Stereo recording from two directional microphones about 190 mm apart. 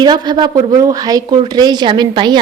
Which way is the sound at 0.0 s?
25° right (ahead or behind).